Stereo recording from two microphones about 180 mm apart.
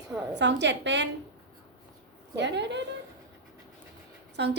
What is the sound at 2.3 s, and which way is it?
Speech, 75° right (ahead or behind).